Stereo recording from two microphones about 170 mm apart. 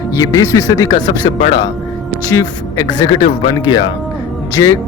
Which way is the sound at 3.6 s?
25° left (ahead or behind).